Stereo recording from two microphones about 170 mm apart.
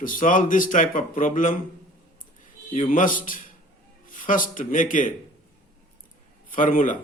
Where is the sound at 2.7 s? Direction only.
50° left (ahead or behind).